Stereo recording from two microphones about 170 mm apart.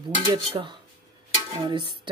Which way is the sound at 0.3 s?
30° right (ahead or behind).